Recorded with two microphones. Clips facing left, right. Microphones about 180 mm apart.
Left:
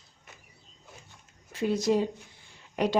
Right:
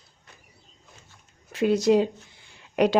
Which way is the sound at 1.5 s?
75° right (ahead or behind).